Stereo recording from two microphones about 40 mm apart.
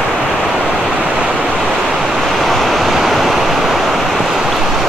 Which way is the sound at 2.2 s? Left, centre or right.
Centre.